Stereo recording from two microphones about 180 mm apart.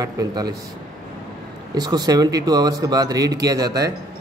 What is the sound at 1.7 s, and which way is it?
Speech, 20° right (ahead or behind).